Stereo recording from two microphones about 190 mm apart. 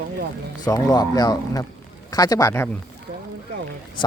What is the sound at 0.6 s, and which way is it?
Speech, 20° left (ahead or behind).